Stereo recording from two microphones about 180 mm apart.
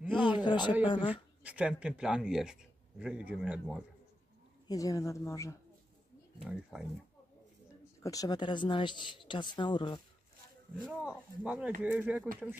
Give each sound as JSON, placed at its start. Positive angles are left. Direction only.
{"t": 0.3, "sound": "speech", "side_deg": 25}
{"t": 1.4, "sound": "speech", "side_deg": -5}
{"t": 4.6, "sound": "speech", "side_deg": 20}
{"t": 6.4, "sound": "speech", "side_deg": 0}
{"t": 8.0, "sound": "speech", "side_deg": 20}
{"t": 10.9, "sound": "speech", "side_deg": -5}